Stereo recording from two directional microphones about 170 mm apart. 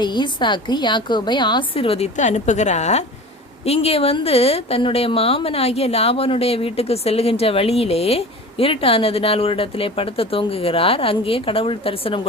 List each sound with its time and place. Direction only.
0.0 s a woman's voice: 25° left (ahead or behind)